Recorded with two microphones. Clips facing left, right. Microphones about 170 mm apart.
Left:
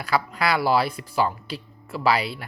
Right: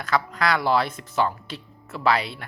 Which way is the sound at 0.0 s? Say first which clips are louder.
Even; 5° left (ahead or behind).